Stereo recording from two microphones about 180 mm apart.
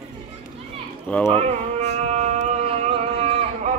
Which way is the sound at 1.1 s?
5° left (ahead or behind).